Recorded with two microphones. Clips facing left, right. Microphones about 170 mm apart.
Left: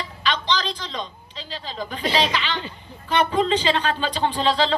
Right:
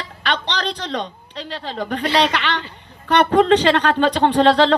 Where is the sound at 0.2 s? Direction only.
65° right (ahead or behind).